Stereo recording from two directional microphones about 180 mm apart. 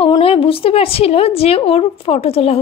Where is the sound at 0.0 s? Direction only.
30° left (ahead or behind).